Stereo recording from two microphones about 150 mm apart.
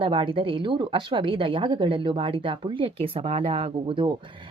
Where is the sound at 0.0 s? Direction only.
35° right (ahead or behind).